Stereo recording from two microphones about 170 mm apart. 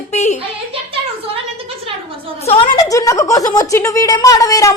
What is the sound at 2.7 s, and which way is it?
Speech, 20° left (ahead or behind).